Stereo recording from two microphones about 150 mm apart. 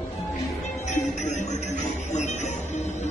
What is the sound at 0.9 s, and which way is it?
Music, 50° left (ahead or behind).